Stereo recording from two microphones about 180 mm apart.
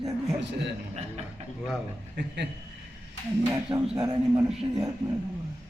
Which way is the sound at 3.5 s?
20° right (ahead or behind).